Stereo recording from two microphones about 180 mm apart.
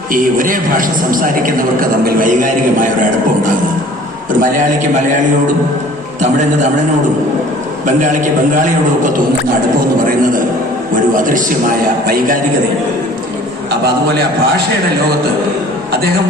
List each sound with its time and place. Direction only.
0.1 s a man's voice: 50° right (ahead or behind)
4.3 s a man's voice: 45° right (ahead or behind)
7.9 s a man's voice: 45° right (ahead or behind)